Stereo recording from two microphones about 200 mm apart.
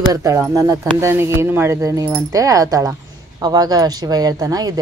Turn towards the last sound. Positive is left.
turn(degrees=-20)  # may be behind; listen again after turning